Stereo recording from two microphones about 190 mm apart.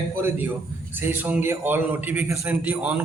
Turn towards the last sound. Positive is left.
turn(degrees=-5)  # may be behind; listen again after turning